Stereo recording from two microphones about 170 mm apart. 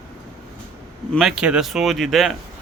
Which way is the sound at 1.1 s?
5° right (ahead or behind).